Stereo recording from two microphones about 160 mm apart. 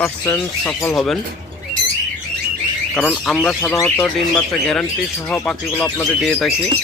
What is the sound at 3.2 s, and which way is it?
Speech, centre (ahead or behind).